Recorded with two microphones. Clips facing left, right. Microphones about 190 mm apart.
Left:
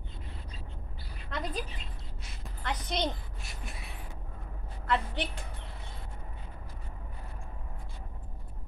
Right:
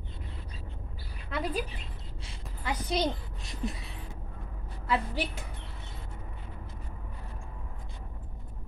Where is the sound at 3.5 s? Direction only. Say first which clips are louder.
Right 11 dB; 35° right (ahead or behind).